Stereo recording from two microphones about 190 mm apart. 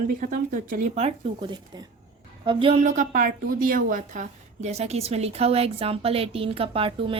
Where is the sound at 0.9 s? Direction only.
30° right (ahead or behind).